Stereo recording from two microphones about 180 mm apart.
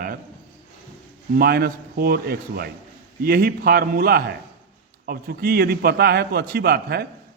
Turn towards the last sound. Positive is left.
turn(degrees=-60)  # may be behind; listen again after turning